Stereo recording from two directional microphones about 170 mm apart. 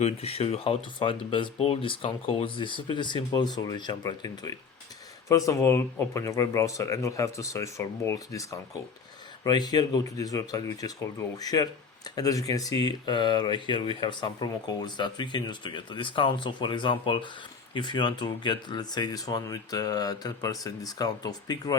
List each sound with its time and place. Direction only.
0.0 s speech: 35° left (ahead or behind)